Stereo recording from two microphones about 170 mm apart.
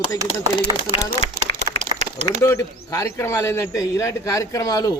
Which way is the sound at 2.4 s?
20° left (ahead or behind).